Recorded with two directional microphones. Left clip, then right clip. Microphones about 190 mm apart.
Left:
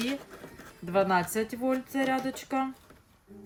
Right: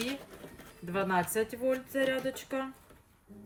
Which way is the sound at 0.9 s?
45° left (ahead or behind).